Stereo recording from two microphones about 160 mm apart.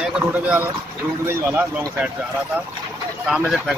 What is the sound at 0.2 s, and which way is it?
Speech, 10° right (ahead or behind).